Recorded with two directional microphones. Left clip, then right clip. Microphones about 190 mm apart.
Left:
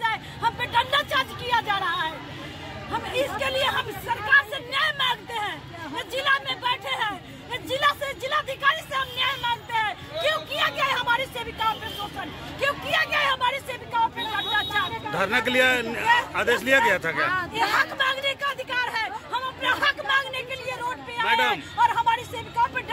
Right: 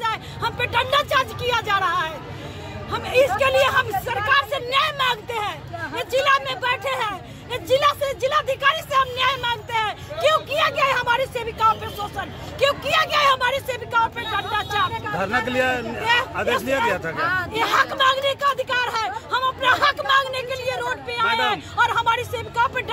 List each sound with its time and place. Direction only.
0.0 s vehicle: 20° right (ahead or behind)
1.5 s speech: 20° right (ahead or behind)
12.6 s speech: 20° right (ahead or behind)
15.1 s a man's voice: 5° left (ahead or behind)
17.2 s speech: 45° right (ahead or behind)
17.6 s speech: 20° right (ahead or behind)
21.3 s a man's voice: 5° left (ahead or behind)
21.8 s speech: 25° right (ahead or behind)